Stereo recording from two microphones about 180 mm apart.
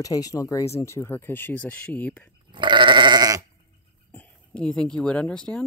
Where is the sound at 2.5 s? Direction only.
25° right (ahead or behind).